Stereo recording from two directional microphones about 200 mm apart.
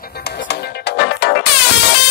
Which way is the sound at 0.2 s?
55° left (ahead or behind).